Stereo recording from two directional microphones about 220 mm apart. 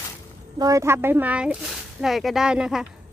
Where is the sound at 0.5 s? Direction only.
15° right (ahead or behind).